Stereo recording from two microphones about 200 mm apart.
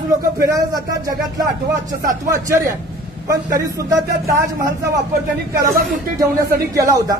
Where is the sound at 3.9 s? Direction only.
15° right (ahead or behind).